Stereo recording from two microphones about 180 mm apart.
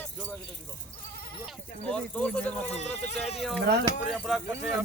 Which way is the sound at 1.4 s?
5° left (ahead or behind).